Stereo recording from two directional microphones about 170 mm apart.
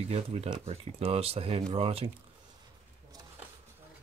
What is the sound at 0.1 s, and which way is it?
Speech, 35° right (ahead or behind).